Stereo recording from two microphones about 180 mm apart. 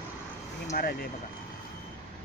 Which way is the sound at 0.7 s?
55° left (ahead or behind).